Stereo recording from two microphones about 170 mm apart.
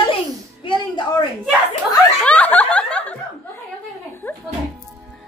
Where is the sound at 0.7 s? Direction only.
30° left (ahead or behind).